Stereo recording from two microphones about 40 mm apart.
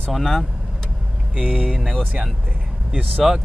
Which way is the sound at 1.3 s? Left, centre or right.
Right.